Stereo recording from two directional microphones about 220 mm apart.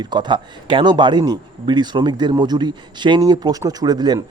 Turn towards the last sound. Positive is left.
turn(degrees=-20)  # may be behind; listen again after turning